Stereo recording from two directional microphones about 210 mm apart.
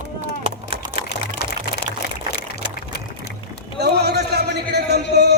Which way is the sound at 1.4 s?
50° left (ahead or behind).